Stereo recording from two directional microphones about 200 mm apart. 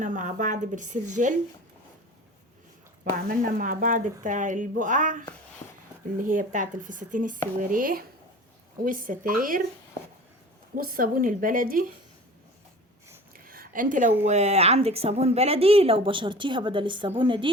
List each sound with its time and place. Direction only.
0.0 s speech: 40° right (ahead or behind)
3.0 s speech: 45° right (ahead or behind)
10.8 s speech: 45° right (ahead or behind)
13.3 s a sound: 45° right (ahead or behind)
14.3 s a woman's voice: 35° right (ahead or behind)